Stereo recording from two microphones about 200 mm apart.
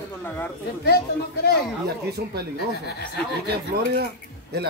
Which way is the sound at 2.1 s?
55° right (ahead or behind).